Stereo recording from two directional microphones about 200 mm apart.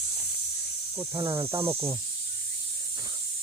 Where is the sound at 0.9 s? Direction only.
15° right (ahead or behind).